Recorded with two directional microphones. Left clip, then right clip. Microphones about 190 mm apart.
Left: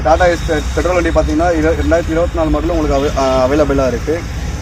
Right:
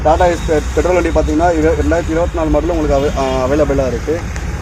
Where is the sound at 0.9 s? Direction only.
15° right (ahead or behind).